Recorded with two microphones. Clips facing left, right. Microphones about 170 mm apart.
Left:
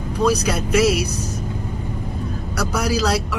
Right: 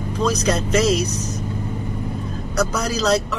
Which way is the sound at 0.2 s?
10° left (ahead or behind).